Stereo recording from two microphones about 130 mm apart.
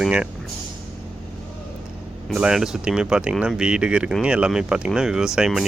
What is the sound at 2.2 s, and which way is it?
Speech, 5° right (ahead or behind).